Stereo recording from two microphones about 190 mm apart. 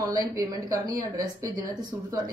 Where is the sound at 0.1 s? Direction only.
15° right (ahead or behind).